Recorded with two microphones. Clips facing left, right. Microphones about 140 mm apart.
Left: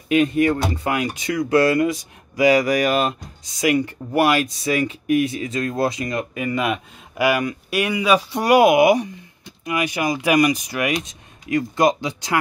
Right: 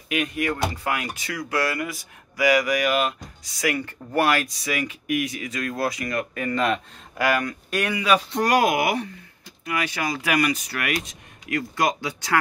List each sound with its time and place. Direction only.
0.1 s speech: 30° left (ahead or behind)
3.6 s speech: 15° left (ahead or behind)
4.6 s speech: 30° left (ahead or behind)